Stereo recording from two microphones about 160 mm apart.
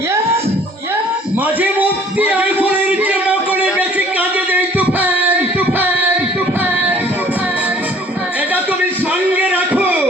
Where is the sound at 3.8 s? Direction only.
10° right (ahead or behind).